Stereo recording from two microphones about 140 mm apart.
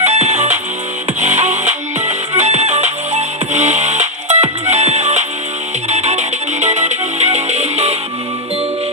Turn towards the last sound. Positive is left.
turn(degrees=-50)  # may be behind; listen again after turning